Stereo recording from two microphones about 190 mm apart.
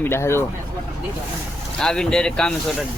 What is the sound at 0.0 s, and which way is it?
Speech, 15° left (ahead or behind).